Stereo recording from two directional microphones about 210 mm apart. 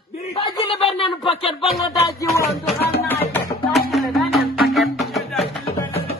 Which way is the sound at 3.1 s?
10° left (ahead or behind).